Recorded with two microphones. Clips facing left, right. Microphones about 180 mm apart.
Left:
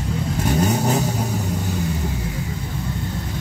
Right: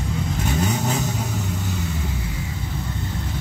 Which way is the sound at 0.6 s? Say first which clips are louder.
Left 4 dB; 40° left (ahead or behind).